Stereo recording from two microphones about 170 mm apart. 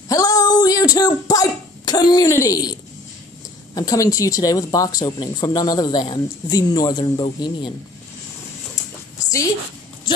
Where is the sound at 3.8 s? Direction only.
20° left (ahead or behind).